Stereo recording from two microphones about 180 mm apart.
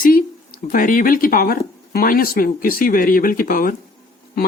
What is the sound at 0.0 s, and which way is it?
Speech, 50° left (ahead or behind).